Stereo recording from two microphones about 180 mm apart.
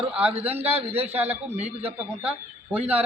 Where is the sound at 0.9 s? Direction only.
35° right (ahead or behind).